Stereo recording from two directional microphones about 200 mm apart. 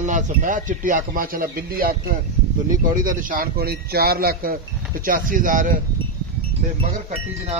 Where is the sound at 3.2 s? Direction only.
45° right (ahead or behind).